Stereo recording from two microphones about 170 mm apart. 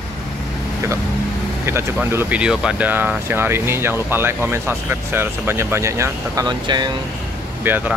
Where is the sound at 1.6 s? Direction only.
15° right (ahead or behind).